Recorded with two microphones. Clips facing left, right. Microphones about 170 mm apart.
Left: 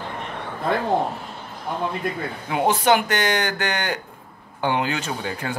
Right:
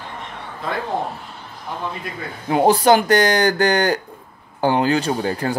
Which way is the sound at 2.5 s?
35° right (ahead or behind).